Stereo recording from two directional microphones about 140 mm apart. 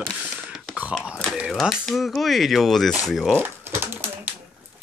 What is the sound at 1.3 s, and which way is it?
Speech, 5° right (ahead or behind).